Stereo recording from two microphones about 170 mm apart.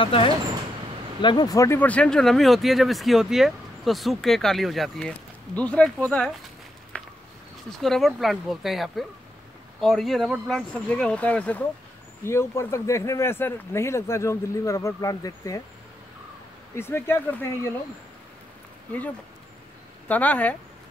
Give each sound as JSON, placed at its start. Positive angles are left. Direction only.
{"t": 0.0, "sound": "speech", "side_deg": 30}
{"t": 6.9, "sound": "a sound", "side_deg": 5}
{"t": 7.8, "sound": "speech", "side_deg": 0}
{"t": 16.7, "sound": "speech", "side_deg": 15}
{"t": 20.1, "sound": "speech", "side_deg": 10}